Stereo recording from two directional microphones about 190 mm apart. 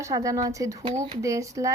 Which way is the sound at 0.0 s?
15° right (ahead or behind).